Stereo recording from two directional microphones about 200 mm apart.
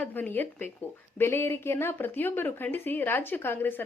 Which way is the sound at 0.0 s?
10° left (ahead or behind).